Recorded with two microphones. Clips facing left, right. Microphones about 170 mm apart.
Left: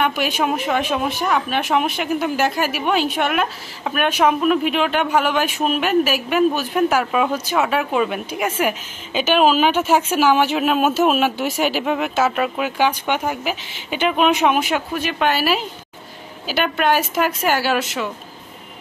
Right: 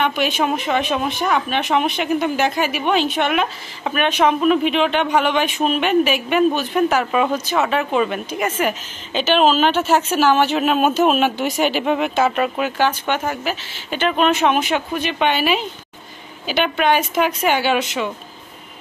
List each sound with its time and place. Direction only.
0.0 s speech: 10° left (ahead or behind)